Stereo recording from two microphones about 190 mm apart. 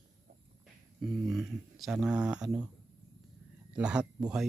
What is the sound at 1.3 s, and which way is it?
Speech, centre (ahead or behind).